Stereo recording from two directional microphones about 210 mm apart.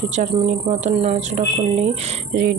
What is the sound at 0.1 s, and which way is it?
A woman's voice, 35° right (ahead or behind).